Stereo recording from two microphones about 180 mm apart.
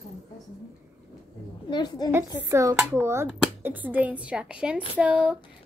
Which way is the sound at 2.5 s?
15° right (ahead or behind).